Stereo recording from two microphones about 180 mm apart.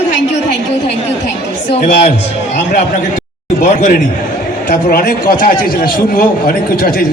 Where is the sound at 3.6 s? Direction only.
45° left (ahead or behind).